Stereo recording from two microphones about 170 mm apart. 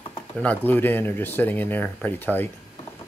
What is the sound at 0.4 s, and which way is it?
Speech, 10° left (ahead or behind).